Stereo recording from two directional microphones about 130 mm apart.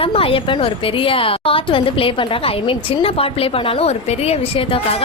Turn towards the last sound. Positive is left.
turn(degrees=50)  # may be behind; listen again after turning